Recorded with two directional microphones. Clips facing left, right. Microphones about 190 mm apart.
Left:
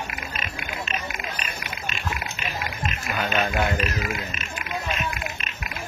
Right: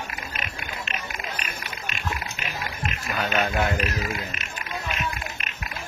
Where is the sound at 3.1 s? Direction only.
5° left (ahead or behind).